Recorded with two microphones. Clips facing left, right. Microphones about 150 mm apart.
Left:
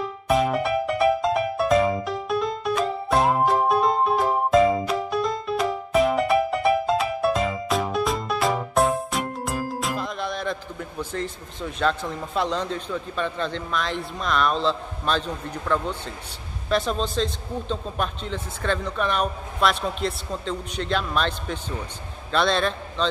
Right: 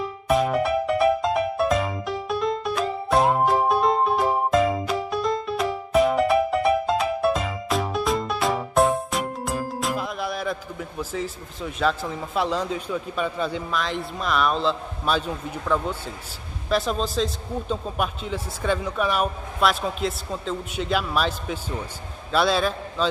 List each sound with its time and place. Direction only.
0.0 s music: centre (ahead or behind)
16.6 s speech: centre (ahead or behind)